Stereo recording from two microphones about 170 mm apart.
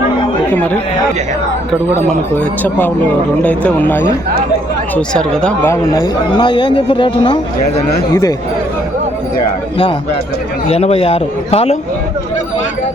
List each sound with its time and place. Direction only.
0.5 s speech: 10° left (ahead or behind)
2.0 s speech: 10° left (ahead or behind)
5.7 s speech: 20° left (ahead or behind)
8.1 s speech: 20° left (ahead or behind)
10.7 s a man's voice: 35° left (ahead or behind)